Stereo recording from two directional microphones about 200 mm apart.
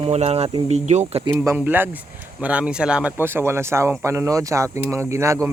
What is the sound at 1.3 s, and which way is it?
Speech, 10° right (ahead or behind).